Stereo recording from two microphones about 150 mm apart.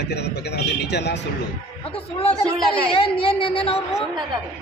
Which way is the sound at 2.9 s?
35° left (ahead or behind).